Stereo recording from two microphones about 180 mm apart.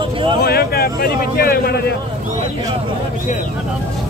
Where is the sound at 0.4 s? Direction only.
60° left (ahead or behind).